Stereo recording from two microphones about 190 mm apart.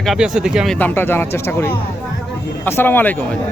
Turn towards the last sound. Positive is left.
turn(degrees=10)  # may be behind; listen again after turning